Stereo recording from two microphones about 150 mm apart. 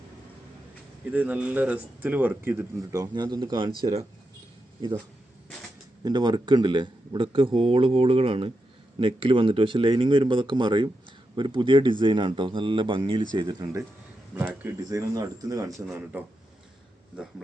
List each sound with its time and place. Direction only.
1.1 s speech: 10° right (ahead or behind); by 3.7 s 30° right (ahead or behind)
6.1 s speech: 30° right (ahead or behind)
14.3 s speech: 10° right (ahead or behind)
14.8 s speech: 25° right (ahead or behind)